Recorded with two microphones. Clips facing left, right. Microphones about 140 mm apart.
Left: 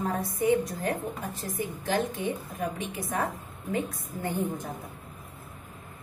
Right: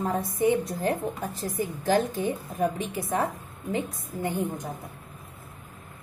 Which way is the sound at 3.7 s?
15° right (ahead or behind).